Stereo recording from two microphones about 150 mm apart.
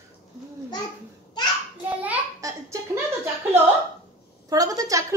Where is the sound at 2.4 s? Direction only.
25° right (ahead or behind).